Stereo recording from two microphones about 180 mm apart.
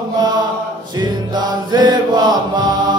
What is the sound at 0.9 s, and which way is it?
Music, 20° right (ahead or behind).